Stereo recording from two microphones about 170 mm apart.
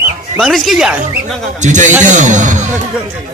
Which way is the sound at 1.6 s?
45° right (ahead or behind).